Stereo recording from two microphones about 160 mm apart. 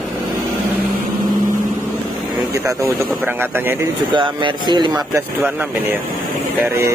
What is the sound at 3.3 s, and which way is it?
Speech, 15° right (ahead or behind).